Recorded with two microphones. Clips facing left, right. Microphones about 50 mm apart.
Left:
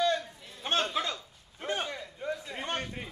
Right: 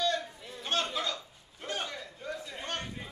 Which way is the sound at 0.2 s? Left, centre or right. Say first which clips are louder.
Right 2 dB; centre.